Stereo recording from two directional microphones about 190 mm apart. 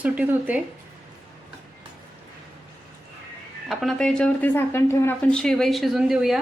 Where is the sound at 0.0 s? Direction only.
10° right (ahead or behind).